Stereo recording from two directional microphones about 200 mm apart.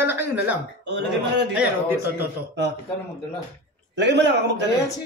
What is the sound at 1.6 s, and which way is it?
Speech, 10° right (ahead or behind).